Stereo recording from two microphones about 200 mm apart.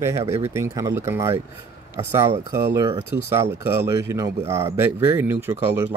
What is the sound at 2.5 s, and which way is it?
Speech, 15° right (ahead or behind).